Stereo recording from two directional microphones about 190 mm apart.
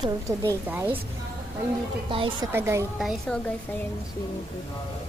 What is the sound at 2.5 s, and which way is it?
Speech, 10° right (ahead or behind).